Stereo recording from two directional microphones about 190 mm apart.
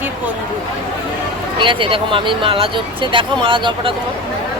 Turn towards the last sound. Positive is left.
turn(degrees=-25)  # may be behind; listen again after turning